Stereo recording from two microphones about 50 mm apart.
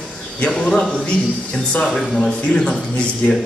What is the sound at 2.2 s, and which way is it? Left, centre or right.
Speech, centre.